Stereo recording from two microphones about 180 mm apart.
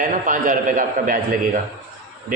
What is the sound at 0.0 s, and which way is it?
A man's voice, 50° right (ahead or behind).